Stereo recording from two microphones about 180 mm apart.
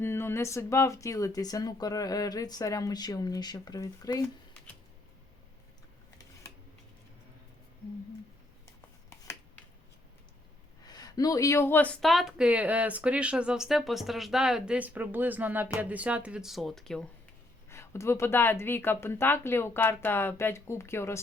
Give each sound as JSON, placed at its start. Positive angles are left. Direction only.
{"t": 0.0, "sound": "speech", "side_deg": 15}
{"t": 10.8, "sound": "speech", "side_deg": 20}
{"t": 17.7, "sound": "speech", "side_deg": 15}